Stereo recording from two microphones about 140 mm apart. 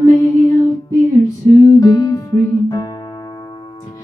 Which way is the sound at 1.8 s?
30° left (ahead or behind).